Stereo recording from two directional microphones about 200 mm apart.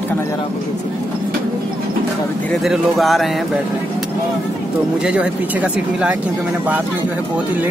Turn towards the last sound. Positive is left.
turn(degrees=-5)  # may be behind; listen again after turning